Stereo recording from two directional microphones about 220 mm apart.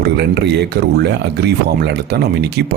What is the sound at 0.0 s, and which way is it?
Speech, 50° right (ahead or behind).